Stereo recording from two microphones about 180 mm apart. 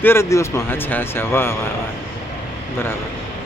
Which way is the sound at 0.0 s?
15° left (ahead or behind).